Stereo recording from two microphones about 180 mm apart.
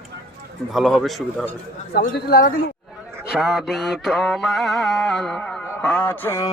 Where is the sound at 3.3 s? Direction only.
Centre (ahead or behind).